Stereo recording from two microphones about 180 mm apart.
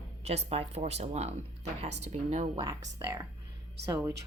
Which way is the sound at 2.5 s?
25° right (ahead or behind).